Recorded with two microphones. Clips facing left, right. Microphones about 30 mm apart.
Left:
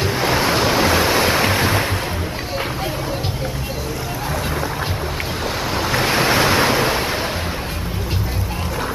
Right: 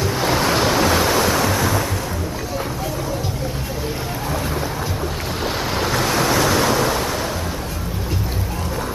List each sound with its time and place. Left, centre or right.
0.2 s waves: centre; by 1.9 s left
5.9 s waves: left